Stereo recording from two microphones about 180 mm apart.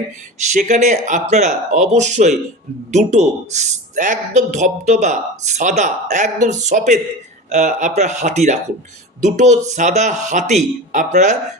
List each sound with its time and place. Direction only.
0.5 s speech: 40° right (ahead or behind)